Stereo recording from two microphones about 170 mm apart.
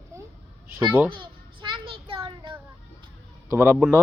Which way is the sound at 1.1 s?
30° right (ahead or behind).